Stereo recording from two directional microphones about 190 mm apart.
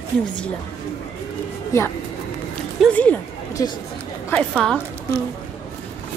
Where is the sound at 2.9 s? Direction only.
10° left (ahead or behind).